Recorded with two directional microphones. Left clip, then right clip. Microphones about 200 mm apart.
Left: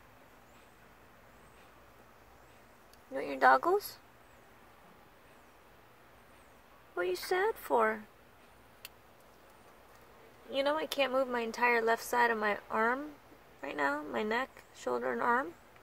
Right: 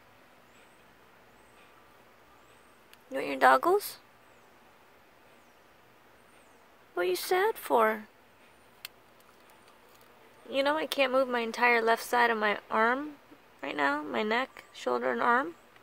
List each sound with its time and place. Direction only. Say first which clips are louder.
3.1 s speech: right 3 dB; 40° right (ahead or behind)
7.0 s speech: right 4 dB; 40° right (ahead or behind)
10.5 s speech: right 4 dB; 35° right (ahead or behind)